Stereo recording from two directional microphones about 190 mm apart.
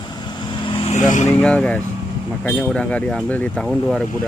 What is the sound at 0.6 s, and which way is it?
Vehicle, 30° left (ahead or behind).